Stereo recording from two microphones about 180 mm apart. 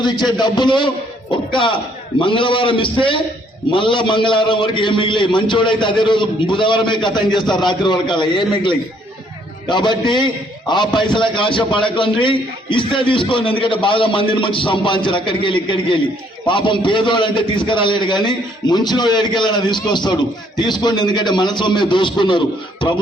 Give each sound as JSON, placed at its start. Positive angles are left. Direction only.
{"t": 0.0, "sound": "a man's voice", "side_deg": 25}
{"t": 2.2, "sound": "a man's voice", "side_deg": 30}